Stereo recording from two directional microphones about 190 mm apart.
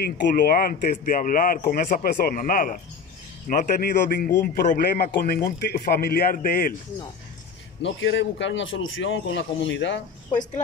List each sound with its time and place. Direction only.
0.0 s a man's voice: 50° left (ahead or behind)
7.8 s a man's voice: 75° left (ahead or behind)